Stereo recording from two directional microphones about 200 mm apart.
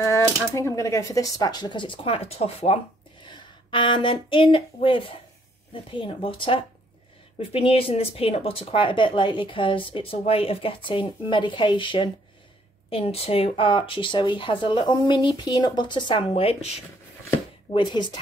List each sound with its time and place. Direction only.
0.0 s speech: 15° left (ahead or behind); by 17.8 s 35° left (ahead or behind)